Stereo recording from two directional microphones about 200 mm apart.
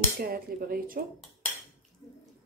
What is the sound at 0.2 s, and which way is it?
Speech, 50° right (ahead or behind).